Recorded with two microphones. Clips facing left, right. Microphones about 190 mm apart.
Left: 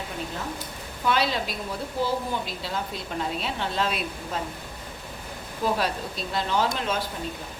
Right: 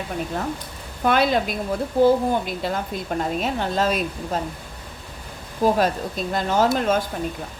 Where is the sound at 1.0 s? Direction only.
50° right (ahead or behind).